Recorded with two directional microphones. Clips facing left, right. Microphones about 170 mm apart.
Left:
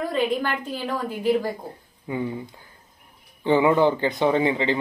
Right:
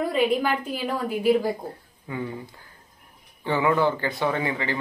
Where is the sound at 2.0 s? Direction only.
20° left (ahead or behind).